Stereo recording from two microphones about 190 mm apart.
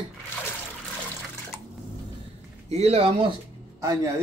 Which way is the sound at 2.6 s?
35° right (ahead or behind).